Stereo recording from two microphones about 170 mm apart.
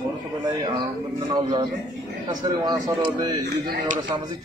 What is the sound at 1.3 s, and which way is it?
Speech, 25° right (ahead or behind).